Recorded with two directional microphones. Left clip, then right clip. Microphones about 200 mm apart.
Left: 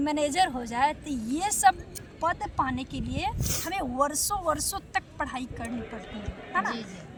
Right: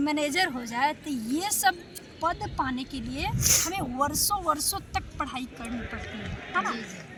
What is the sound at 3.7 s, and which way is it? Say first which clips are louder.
Speech: left 1 dB; 10° left (ahead or behind).